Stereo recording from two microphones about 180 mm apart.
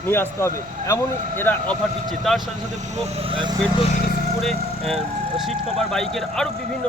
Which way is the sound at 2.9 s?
35° right (ahead or behind).